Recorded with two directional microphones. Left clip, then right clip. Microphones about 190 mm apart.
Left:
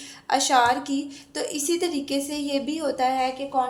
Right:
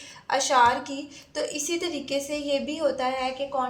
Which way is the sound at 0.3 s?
50° left (ahead or behind).